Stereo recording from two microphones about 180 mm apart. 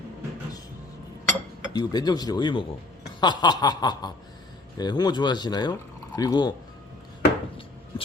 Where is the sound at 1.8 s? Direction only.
20° left (ahead or behind).